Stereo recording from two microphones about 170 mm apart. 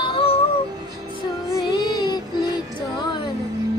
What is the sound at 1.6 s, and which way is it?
Child singing, 25° left (ahead or behind).